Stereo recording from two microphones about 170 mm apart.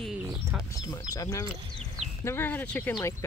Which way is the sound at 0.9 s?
20° left (ahead or behind).